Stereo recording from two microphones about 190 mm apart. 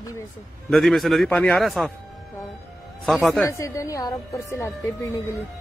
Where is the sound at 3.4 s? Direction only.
15° left (ahead or behind).